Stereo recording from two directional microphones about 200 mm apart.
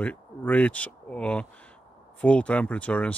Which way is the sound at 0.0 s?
5° left (ahead or behind).